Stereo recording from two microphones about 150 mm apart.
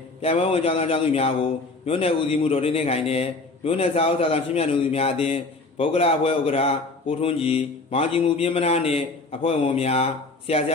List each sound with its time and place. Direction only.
0.2 s a man's voice: 40° left (ahead or behind)